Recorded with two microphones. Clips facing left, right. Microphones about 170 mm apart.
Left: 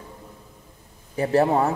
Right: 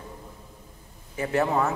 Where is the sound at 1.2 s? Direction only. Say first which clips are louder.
Left 5 dB; 35° left (ahead or behind).